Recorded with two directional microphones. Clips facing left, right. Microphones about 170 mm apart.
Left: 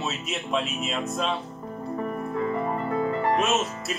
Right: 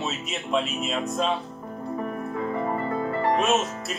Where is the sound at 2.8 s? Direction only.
5° left (ahead or behind).